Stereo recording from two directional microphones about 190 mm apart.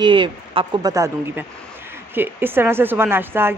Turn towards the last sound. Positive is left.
turn(degrees=-10)  # may be behind; listen again after turning